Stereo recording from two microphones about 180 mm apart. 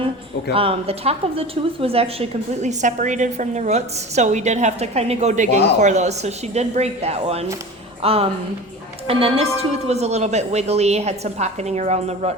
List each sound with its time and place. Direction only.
0.5 s a woman's voice: 30° right (ahead or behind)